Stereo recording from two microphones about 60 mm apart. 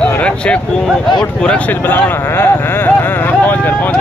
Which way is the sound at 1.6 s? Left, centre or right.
Left.